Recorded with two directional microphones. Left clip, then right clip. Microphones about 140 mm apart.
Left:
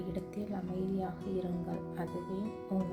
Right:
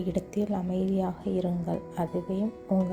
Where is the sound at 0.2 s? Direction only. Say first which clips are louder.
Right 10 dB; 50° right (ahead or behind).